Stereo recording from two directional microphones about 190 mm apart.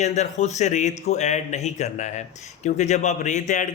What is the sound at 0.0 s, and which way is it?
A man's voice, 35° left (ahead or behind).